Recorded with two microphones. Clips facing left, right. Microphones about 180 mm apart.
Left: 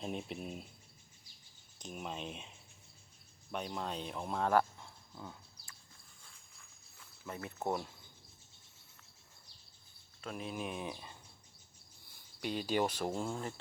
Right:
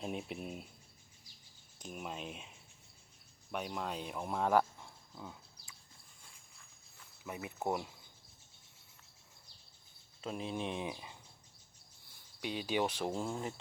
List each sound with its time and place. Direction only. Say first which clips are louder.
0.0 s speech: even; 5° right (ahead or behind)
1.8 s speech: left 1 dB; 5° right (ahead or behind)
3.5 s speech: even; 10° right (ahead or behind)
7.3 s speech: even; 10° right (ahead or behind)
10.2 s speech: right 2 dB; 25° right (ahead or behind)
10.8 s speech: right 1 dB; 10° right (ahead or behind)
12.4 s speech: left 1 dB; centre (ahead or behind)